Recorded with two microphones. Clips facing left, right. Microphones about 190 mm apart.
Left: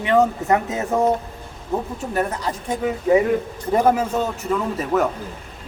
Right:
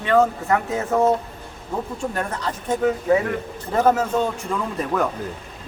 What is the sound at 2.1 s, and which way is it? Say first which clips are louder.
Speech: left 3 dB; 10° left (ahead or behind).